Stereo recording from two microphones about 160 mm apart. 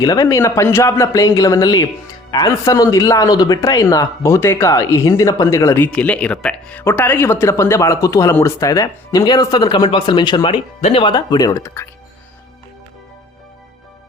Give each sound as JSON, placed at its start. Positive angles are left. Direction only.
{"t": 0.0, "sound": "speech", "side_deg": 20}